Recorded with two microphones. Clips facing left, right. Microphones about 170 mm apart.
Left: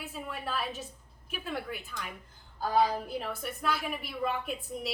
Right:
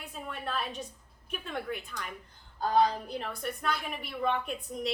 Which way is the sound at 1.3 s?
5° left (ahead or behind).